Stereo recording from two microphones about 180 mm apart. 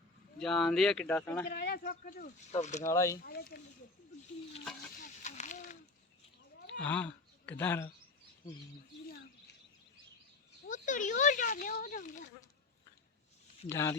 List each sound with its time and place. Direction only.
0.3 s speech: 5° left (ahead or behind)
1.5 s speech: 65° left (ahead or behind)
2.5 s speech: 40° left (ahead or behind)
2.8 s speech: 15° left (ahead or behind)
3.2 s speech: 60° left (ahead or behind)
5.0 s speech: 45° left (ahead or behind)
6.8 s speech: 10° left (ahead or behind)
10.7 s speech: 45° left (ahead or behind)
13.7 s speech: 15° left (ahead or behind)